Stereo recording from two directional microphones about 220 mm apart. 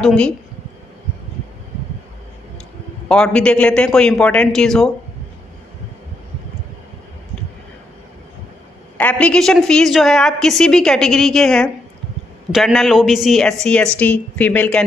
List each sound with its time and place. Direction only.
0.0 s a woman's voice: 5° left (ahead or behind)
3.1 s a woman's voice: 5° left (ahead or behind)
8.9 s a woman's voice: 5° left (ahead or behind)